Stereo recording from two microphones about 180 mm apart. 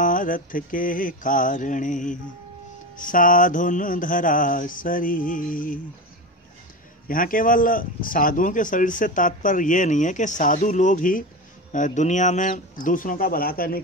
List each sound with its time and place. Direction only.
0.0 s speech: 45° left (ahead or behind)
7.1 s speech: 50° left (ahead or behind)